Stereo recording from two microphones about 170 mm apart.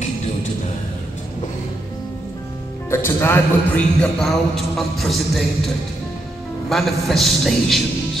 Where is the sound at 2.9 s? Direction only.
15° left (ahead or behind).